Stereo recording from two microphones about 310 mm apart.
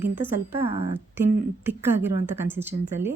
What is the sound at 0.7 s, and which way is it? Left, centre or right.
Speech, centre.